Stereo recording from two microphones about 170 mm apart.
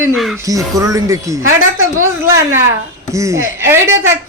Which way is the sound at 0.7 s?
20° right (ahead or behind).